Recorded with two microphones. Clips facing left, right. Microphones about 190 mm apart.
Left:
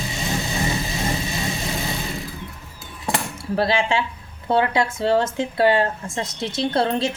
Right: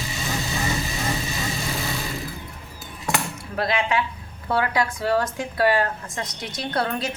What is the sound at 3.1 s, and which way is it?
Cutlery, 30° left (ahead or behind).